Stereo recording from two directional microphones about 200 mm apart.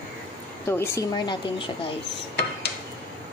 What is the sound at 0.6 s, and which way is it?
A woman's voice, 15° left (ahead or behind).